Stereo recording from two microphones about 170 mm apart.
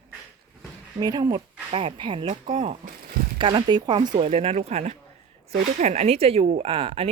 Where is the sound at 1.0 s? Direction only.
20° right (ahead or behind).